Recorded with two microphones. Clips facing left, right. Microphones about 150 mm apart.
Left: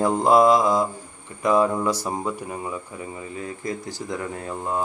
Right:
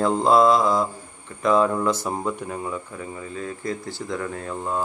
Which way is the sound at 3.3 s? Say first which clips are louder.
Right 1 dB; 15° left (ahead or behind).